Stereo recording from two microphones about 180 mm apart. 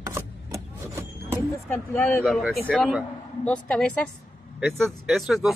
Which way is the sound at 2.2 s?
Centre (ahead or behind).